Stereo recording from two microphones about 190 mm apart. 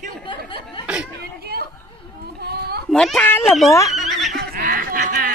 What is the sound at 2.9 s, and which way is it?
A child's voice, 5° left (ahead or behind).